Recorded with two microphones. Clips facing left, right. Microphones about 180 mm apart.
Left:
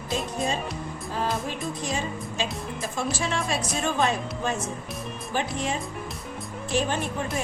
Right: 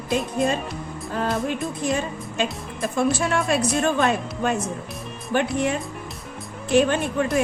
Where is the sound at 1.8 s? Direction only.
55° right (ahead or behind).